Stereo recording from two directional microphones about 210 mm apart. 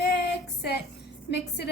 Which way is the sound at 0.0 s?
50° left (ahead or behind).